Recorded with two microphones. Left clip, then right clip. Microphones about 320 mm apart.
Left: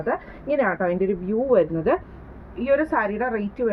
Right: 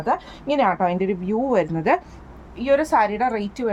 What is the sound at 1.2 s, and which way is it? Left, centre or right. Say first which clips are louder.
A woman's voice: left 2 dB; right.